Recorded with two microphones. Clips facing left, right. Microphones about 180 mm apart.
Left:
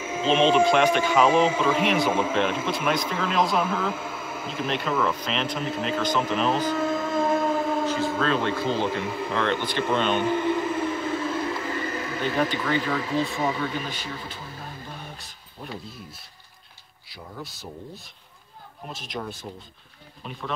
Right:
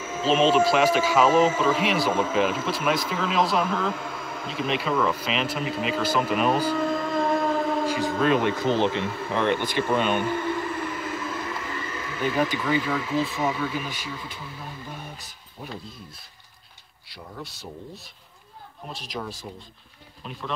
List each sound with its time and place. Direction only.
0.2 s speech: 5° right (ahead or behind)
6.8 s a sound: centre (ahead or behind)
7.8 s a sound: 10° right (ahead or behind)
8.2 s speech: 15° right (ahead or behind)
9.0 s speech: 15° left (ahead or behind)
9.3 s speech: 15° right (ahead or behind)
10.2 s vehicle: 20° left (ahead or behind); by 12.2 s 35° left (ahead or behind)
12.4 s speech: 10° right (ahead or behind)
17.1 s speech: centre (ahead or behind)